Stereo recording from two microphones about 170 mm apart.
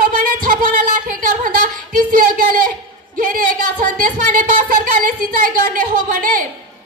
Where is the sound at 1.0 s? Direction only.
55° right (ahead or behind).